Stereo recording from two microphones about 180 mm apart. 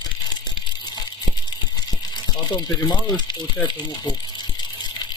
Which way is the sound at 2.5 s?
25° left (ahead or behind).